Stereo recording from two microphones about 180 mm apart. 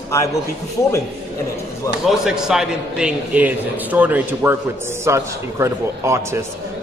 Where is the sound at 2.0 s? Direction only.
Centre (ahead or behind).